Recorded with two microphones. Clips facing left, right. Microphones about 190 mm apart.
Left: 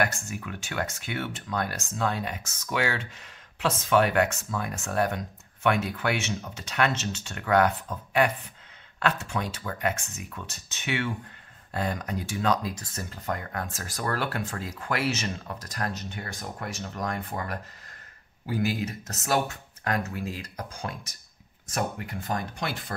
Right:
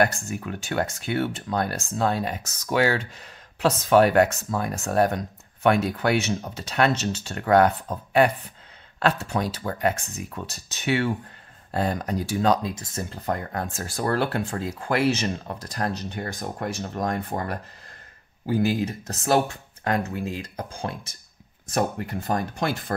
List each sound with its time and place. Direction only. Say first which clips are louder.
0.0 s speech: right 5 dB; 35° right (ahead or behind)